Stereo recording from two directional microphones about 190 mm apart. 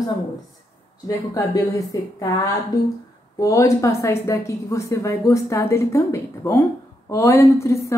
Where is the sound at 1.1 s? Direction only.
20° left (ahead or behind).